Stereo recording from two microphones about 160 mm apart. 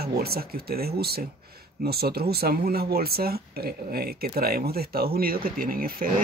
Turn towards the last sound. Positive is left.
turn(degrees=-65)  # may be behind; listen again after turning